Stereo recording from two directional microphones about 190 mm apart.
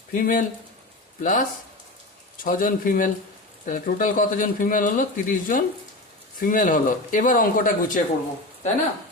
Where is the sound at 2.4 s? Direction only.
45° left (ahead or behind).